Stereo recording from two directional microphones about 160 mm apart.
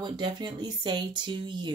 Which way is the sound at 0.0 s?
25° right (ahead or behind).